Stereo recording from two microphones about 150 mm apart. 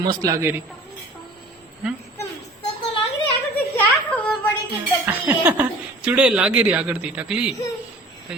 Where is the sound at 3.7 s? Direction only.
10° left (ahead or behind).